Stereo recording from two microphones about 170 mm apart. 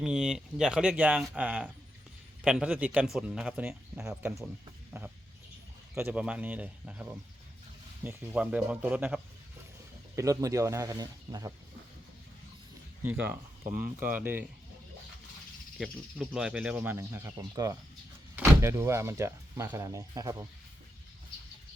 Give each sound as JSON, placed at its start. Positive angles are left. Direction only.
{"t": 0.0, "sound": "speech", "side_deg": -5}
{"t": 10.2, "sound": "speech", "side_deg": -20}
{"t": 13.0, "sound": "speech", "side_deg": -10}
{"t": 15.8, "sound": "speech", "side_deg": -5}